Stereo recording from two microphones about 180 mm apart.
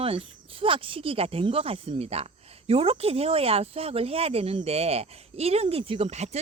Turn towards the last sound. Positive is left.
turn(degrees=-35)  # may be behind; listen again after turning